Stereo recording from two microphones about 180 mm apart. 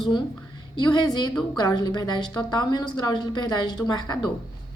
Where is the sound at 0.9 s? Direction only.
25° left (ahead or behind).